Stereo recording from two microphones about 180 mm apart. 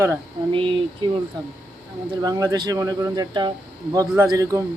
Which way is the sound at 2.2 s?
20° right (ahead or behind).